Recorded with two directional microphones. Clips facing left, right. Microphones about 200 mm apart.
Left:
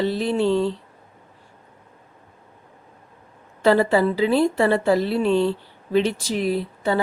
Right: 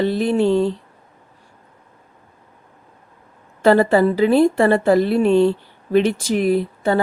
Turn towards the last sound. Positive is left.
turn(degrees=-50)  # may be behind; listen again after turning